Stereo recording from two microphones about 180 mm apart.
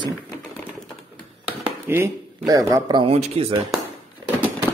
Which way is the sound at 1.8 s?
15° right (ahead or behind).